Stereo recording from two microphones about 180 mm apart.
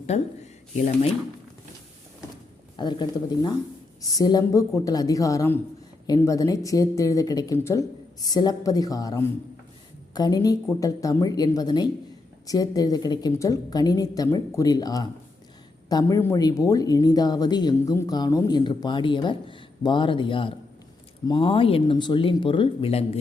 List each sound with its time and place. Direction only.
0.1 s speech: 40° left (ahead or behind)
2.7 s speech: 25° left (ahead or behind)